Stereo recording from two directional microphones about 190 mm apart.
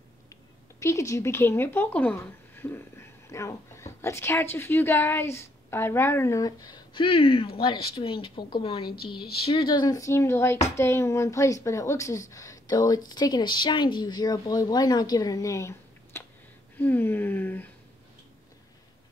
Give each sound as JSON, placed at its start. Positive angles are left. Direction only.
{"t": 0.7, "sound": "a woman's voice", "side_deg": 15}